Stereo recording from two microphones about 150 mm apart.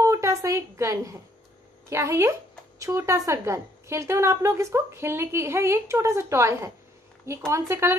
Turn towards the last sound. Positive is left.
turn(degrees=-15)  # may be behind; listen again after turning